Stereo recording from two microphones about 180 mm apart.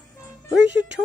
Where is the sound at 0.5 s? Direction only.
80° right.